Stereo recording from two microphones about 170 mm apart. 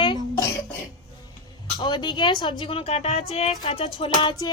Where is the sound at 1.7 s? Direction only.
25° left (ahead or behind).